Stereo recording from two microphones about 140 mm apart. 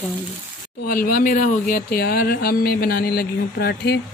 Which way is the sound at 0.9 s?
90° left.